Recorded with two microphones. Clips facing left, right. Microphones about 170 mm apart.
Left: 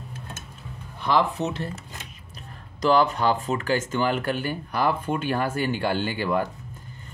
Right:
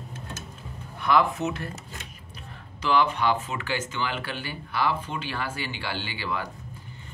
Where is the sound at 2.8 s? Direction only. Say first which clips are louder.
Left 3 dB; 40° left (ahead or behind).